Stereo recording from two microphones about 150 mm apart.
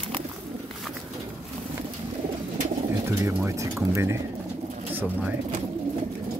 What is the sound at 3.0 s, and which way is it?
Speech, 20° right (ahead or behind).